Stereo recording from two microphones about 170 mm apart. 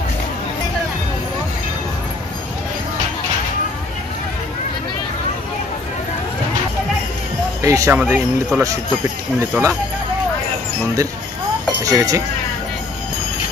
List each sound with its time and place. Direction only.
7.6 s speech: 20° right (ahead or behind)
8.0 s speech: 10° right (ahead or behind)
11.8 s speech: 20° right (ahead or behind)